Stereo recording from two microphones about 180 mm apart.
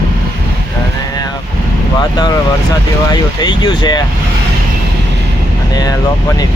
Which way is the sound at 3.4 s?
25° left (ahead or behind).